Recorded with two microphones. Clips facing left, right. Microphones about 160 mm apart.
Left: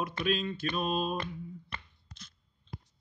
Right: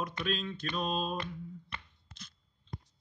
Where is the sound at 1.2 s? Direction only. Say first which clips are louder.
Left 2 dB; 40° left (ahead or behind).